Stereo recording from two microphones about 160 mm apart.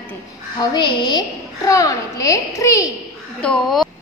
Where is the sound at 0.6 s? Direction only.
25° left (ahead or behind).